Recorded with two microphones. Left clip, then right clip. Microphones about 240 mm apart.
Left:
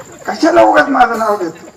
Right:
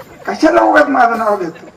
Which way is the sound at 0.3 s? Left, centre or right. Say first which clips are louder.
Left 1 dB; right.